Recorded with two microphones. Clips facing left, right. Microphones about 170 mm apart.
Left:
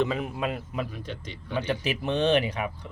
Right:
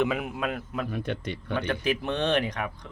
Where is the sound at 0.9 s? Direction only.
60° right (ahead or behind).